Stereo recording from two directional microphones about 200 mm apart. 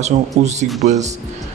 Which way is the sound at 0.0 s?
35° right (ahead or behind).